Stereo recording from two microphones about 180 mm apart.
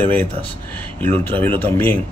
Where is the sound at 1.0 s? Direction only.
35° right (ahead or behind).